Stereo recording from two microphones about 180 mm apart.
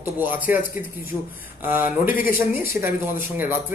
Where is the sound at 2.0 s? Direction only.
50° left (ahead or behind).